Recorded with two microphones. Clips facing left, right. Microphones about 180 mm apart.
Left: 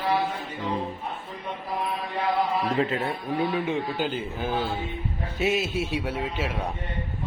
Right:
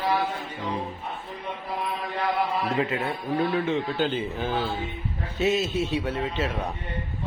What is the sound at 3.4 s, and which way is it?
A man's voice, 10° left (ahead or behind).